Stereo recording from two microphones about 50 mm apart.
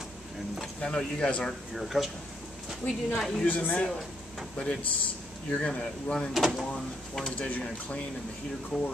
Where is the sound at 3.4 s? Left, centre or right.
Left.